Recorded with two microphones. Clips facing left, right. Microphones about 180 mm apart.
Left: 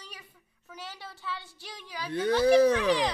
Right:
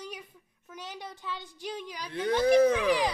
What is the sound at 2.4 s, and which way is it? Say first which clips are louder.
Speech: left 1 dB; 30° left (ahead or behind).